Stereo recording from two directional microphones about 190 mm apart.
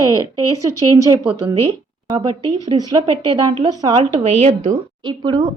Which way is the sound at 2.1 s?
25° right (ahead or behind).